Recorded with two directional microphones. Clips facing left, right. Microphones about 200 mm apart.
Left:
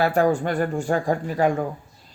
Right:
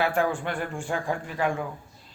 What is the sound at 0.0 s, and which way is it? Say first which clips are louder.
Speech: left 6 dB; 40° left (ahead or behind).